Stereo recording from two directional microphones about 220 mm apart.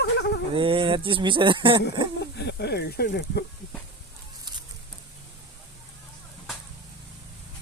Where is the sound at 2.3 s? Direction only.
50° left (ahead or behind).